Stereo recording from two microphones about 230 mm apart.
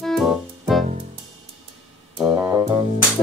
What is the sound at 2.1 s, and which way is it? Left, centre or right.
Music, centre.